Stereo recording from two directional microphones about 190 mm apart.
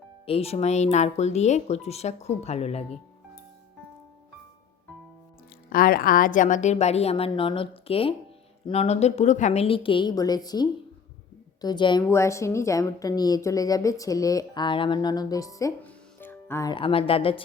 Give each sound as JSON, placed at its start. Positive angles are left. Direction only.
{"t": 0.3, "sound": "speech", "side_deg": 30}
{"t": 5.7, "sound": "a woman's voice", "side_deg": 50}
{"t": 16.7, "sound": "a woman's voice", "side_deg": 30}